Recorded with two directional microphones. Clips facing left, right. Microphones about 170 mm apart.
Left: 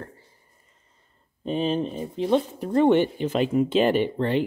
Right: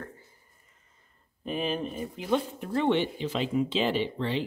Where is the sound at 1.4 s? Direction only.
30° left (ahead or behind).